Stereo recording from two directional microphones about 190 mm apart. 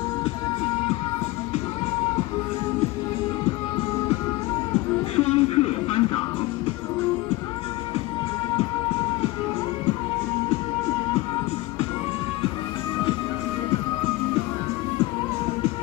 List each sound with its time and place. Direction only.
5.1 s music: 30° left (ahead or behind)